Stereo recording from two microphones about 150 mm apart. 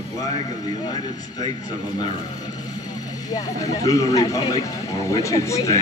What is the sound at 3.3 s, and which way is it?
Speech, 25° left (ahead or behind).